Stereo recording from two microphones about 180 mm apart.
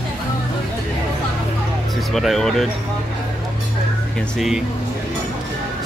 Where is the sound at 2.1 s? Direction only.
Centre (ahead or behind).